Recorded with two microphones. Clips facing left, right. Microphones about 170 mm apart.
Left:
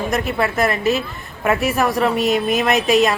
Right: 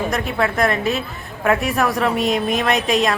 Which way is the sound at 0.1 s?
5° left (ahead or behind).